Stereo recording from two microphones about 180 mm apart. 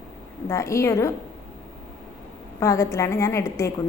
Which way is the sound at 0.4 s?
15° left (ahead or behind).